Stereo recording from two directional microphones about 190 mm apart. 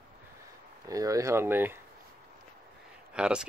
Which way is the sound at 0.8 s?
15° right (ahead or behind).